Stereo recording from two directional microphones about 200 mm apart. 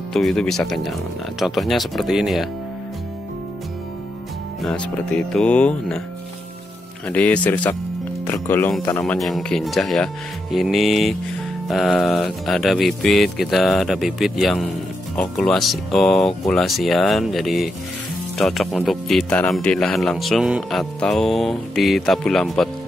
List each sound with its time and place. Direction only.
0.1 s speech: centre (ahead or behind)
4.6 s speech: 5° left (ahead or behind)
7.1 s speech: 5° left (ahead or behind)